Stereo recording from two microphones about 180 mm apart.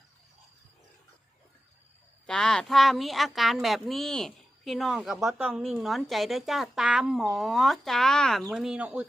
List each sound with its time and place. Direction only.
2.2 s speech: 5° left (ahead or behind)